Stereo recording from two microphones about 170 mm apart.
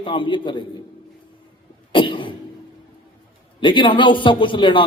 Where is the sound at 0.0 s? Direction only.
30° left (ahead or behind).